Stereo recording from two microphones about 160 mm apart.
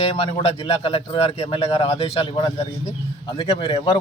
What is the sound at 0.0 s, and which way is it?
Speech, 35° left (ahead or behind).